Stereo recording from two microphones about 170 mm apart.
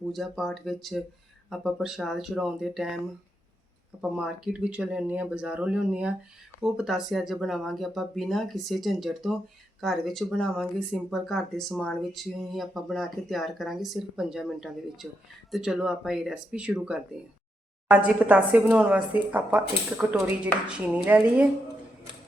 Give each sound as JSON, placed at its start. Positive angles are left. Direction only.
{"t": 0.1, "sound": "speech", "side_deg": 0}
{"t": 4.2, "sound": "speech", "side_deg": -5}